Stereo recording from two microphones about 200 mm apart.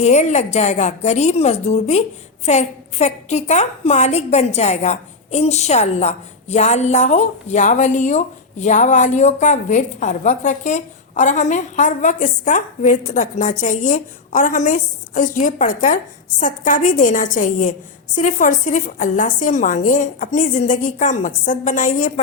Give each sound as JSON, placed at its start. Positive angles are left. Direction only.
{"t": 0.0, "sound": "a woman's voice", "side_deg": 35}